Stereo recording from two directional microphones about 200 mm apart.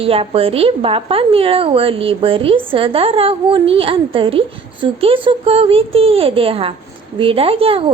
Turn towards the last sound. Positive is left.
turn(degrees=-30)  # may be behind; listen again after turning